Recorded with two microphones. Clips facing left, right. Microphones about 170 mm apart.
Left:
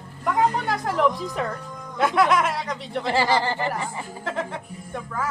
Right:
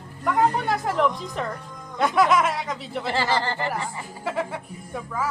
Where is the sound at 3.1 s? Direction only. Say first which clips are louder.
Left 3 dB; 15° left (ahead or behind).